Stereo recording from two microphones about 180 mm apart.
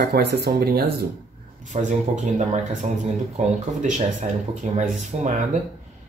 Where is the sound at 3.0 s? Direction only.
40° right (ahead or behind).